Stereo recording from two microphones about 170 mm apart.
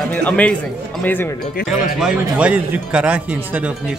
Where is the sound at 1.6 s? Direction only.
5° right (ahead or behind).